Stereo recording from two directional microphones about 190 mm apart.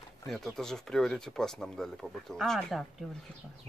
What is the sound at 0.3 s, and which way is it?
Speech, centre (ahead or behind).